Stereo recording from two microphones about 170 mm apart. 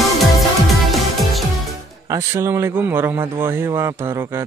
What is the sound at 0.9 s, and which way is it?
Music, centre (ahead or behind).